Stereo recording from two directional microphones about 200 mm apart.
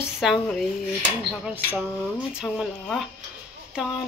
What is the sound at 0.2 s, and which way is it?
Speech, centre (ahead or behind).